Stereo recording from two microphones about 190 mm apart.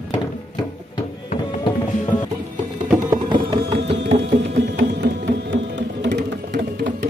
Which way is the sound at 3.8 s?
65° right (ahead or behind).